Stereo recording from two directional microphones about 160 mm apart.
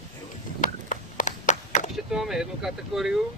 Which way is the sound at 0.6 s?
55° left (ahead or behind).